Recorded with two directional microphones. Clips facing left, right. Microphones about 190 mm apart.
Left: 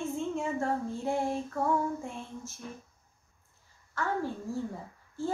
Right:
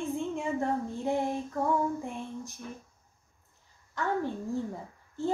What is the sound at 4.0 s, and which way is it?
Speech, 20° right (ahead or behind).